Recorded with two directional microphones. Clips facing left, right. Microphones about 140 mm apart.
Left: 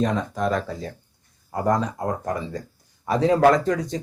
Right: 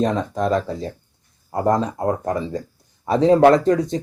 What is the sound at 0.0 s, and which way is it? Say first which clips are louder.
Speech: right 3 dB; 25° right (ahead or behind).